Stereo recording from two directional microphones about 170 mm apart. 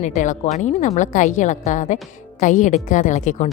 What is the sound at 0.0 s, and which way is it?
A woman's voice, 45° left (ahead or behind).